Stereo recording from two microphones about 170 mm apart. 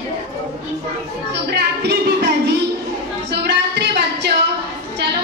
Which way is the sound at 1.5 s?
80° right.